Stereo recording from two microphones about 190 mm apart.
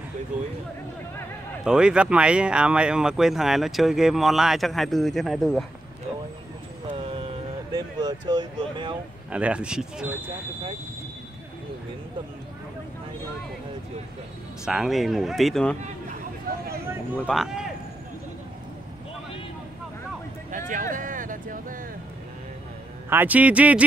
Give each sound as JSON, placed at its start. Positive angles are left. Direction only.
{"t": 1.6, "sound": "speech", "side_deg": -5}
{"t": 7.7, "sound": "speech", "side_deg": -20}
{"t": 9.3, "sound": "speech", "side_deg": -5}
{"t": 14.6, "sound": "speech", "side_deg": 0}
{"t": 16.8, "sound": "speech", "side_deg": -5}
{"t": 20.5, "sound": "vehicle", "side_deg": -45}
{"t": 23.0, "sound": "a man's voice", "side_deg": -10}